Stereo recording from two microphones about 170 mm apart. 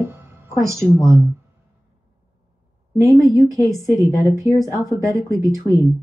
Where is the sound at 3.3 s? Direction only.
20° right (ahead or behind).